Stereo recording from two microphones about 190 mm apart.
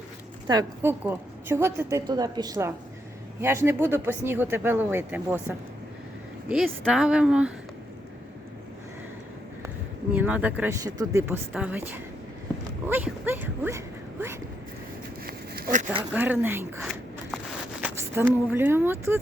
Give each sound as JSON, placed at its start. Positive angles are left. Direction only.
{"t": 0.4, "sound": "a woman's voice", "side_deg": -15}
{"t": 6.8, "sound": "speech", "side_deg": -5}
{"t": 9.6, "sound": "a woman's voice", "side_deg": -10}
{"t": 15.3, "sound": "a sound", "side_deg": -50}
{"t": 16.1, "sound": "a woman's voice", "side_deg": -10}
{"t": 16.9, "sound": "a sound", "side_deg": -5}